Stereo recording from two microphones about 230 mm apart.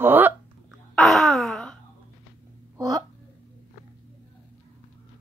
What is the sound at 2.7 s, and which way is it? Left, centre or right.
Speech, centre.